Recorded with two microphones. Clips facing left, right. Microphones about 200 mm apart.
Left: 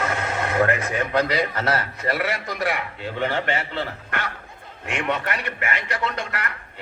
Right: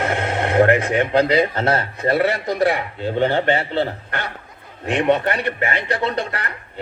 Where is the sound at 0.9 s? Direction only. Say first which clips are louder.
Right 6 dB; 30° right (ahead or behind).